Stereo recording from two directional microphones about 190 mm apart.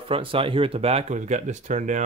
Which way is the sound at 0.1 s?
30° right (ahead or behind).